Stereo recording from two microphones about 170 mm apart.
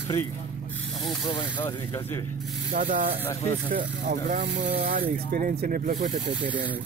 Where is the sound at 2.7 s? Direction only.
70° right (ahead or behind).